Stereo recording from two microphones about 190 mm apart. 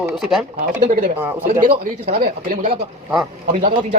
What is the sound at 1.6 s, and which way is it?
Speech, 45° right (ahead or behind).